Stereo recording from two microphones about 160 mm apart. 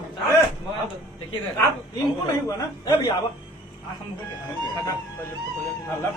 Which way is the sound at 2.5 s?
25° left (ahead or behind).